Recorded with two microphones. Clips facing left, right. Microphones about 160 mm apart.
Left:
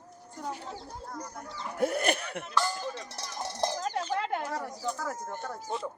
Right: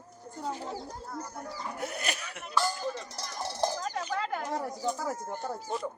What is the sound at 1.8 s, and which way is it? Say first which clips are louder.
Speech: left 11 dB; 55° left (ahead or behind).